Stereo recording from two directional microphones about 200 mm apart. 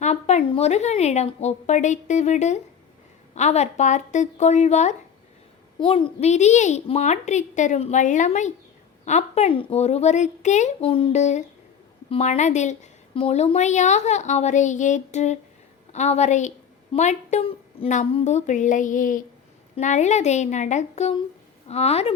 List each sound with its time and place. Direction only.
0.0 s a woman's voice: 35° left (ahead or behind)